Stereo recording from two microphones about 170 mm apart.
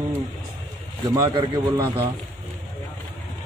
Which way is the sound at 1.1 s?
25° right (ahead or behind).